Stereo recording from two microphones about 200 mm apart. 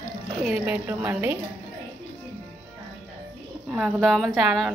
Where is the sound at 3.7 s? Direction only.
Centre (ahead or behind).